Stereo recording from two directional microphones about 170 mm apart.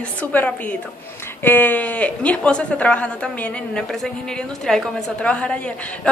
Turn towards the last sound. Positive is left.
turn(degrees=10)  # may be behind; listen again after turning